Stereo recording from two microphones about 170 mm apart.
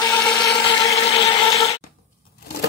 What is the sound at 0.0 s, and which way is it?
Blender, 15° left (ahead or behind).